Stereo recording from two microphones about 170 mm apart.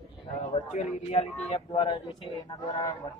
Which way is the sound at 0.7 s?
40° left (ahead or behind).